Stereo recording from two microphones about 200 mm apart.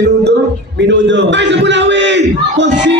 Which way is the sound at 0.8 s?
60° right (ahead or behind).